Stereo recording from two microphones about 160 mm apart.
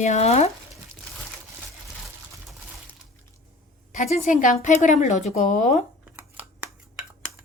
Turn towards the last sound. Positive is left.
turn(degrees=-10)  # may be behind; listen again after turning